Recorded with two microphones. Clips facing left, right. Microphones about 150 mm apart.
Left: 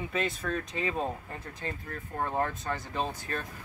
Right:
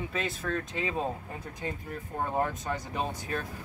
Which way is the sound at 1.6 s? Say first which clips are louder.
Right 2 dB; 15° right (ahead or behind).